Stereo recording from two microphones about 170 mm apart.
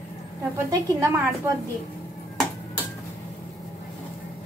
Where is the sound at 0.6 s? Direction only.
20° right (ahead or behind).